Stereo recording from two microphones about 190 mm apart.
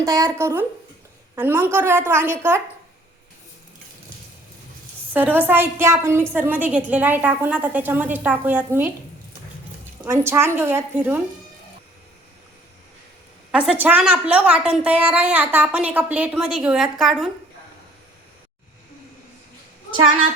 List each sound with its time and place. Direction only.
0.0 s a woman's voice: 15° right (ahead or behind)
5.1 s a woman's voice: 10° right (ahead or behind)
10.0 s a woman's voice: 15° right (ahead or behind)
13.5 s a woman's voice: 5° right (ahead or behind)